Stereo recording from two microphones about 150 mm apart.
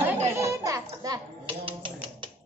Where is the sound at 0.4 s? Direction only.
20° right (ahead or behind).